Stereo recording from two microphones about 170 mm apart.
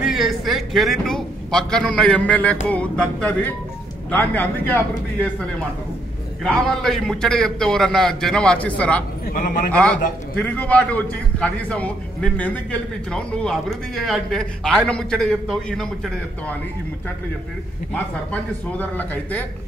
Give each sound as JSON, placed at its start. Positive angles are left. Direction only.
{"t": 0.0, "sound": "a man's voice", "side_deg": 0}
{"t": 9.3, "sound": "a man's voice", "side_deg": 50}
{"t": 10.3, "sound": "a man's voice", "side_deg": 10}
{"t": 17.9, "sound": "a man's voice", "side_deg": 10}